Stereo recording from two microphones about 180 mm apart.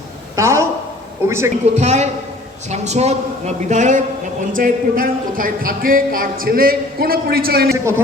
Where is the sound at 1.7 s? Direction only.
40° right (ahead or behind); by 7.8 s 60° right (ahead or behind).